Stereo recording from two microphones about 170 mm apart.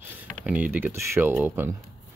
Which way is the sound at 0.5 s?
10° right (ahead or behind).